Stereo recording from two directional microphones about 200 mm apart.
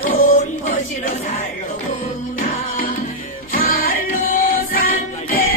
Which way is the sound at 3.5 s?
45° left (ahead or behind).